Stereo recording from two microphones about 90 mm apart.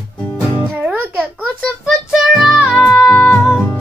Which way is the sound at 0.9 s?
20° right (ahead or behind).